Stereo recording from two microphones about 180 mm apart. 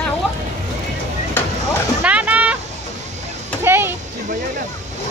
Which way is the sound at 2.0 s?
10° right (ahead or behind).